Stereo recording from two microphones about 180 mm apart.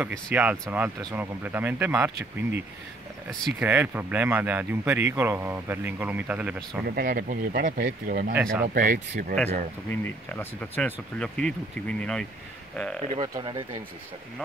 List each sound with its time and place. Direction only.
0.3 s speech: 10° right (ahead or behind)
3.3 s speech: 5° right (ahead or behind)
6.9 s speech: 55° right (ahead or behind)
9.8 s speech: 10° left (ahead or behind)
13.1 s speech: 25° right (ahead or behind)